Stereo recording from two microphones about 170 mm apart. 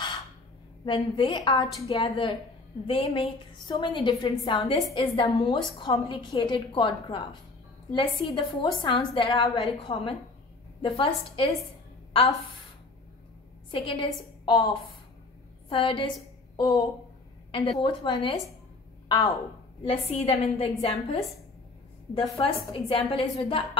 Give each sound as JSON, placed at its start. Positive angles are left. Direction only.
{"t": 0.8, "sound": "a woman's voice", "side_deg": 30}
{"t": 13.7, "sound": "a woman's voice", "side_deg": 30}